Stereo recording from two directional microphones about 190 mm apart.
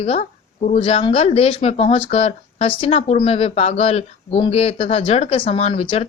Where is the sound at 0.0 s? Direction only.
35° left (ahead or behind).